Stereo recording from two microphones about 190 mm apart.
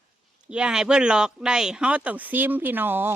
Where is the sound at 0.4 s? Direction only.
5° right (ahead or behind).